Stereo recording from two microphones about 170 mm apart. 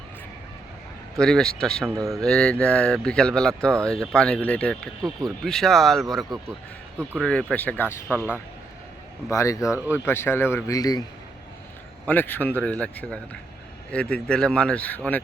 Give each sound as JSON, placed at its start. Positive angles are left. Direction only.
{"t": 1.2, "sound": "speech", "side_deg": 5}
{"t": 9.3, "sound": "speech", "side_deg": 20}
{"t": 9.7, "sound": "speech", "side_deg": -10}
{"t": 10.1, "sound": "speech", "side_deg": 15}
{"t": 12.0, "sound": "speech", "side_deg": 10}